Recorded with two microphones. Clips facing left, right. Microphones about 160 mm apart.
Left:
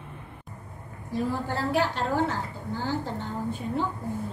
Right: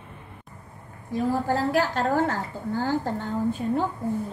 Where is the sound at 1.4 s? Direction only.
40° right (ahead or behind).